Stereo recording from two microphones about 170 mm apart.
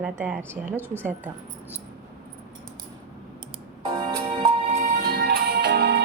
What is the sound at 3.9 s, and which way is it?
Music, 30° right (ahead or behind).